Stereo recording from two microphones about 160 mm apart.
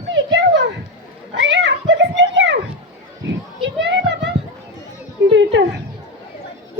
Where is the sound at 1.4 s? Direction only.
90° right.